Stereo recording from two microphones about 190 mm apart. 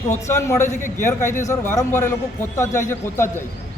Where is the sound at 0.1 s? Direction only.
15° left (ahead or behind).